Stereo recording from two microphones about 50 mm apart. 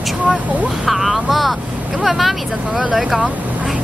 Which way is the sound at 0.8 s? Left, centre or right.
Centre.